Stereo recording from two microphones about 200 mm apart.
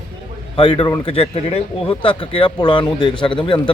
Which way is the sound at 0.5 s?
25° left (ahead or behind).